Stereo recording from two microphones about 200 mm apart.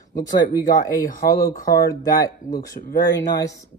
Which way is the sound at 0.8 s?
45° left (ahead or behind).